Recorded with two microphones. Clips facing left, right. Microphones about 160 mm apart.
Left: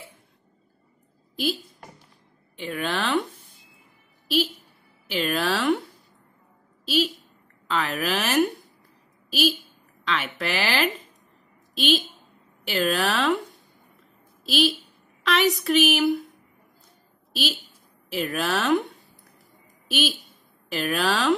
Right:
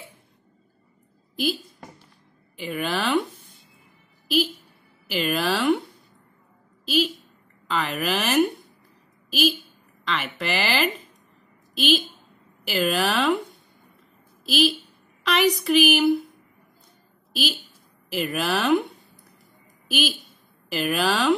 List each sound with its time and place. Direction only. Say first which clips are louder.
1.3 s a woman's voice: right 1 dB; centre (ahead or behind)
5.0 s a woman's voice: right 1 dB; centre (ahead or behind)
7.6 s a woman's voice: even; centre (ahead or behind)
17.3 s a woman's voice: right 1 dB; centre (ahead or behind)
19.9 s a woman's voice: even; centre (ahead or behind)